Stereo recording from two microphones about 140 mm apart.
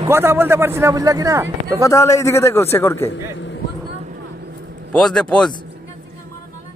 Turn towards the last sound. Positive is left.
turn(degrees=5)  # may be behind; listen again after turning